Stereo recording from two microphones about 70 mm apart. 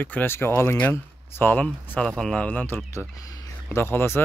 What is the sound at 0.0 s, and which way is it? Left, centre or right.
Speech, left.